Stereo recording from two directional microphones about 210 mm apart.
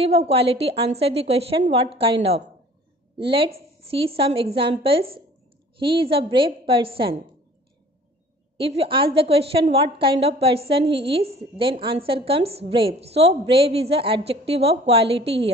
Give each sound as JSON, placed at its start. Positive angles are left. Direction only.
{"t": 0.0, "sound": "a woman's voice", "side_deg": -30}
{"t": 8.5, "sound": "a woman's voice", "side_deg": -25}